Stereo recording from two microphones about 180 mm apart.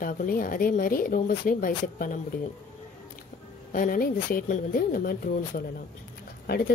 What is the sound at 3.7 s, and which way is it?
Speech, 50° left (ahead or behind).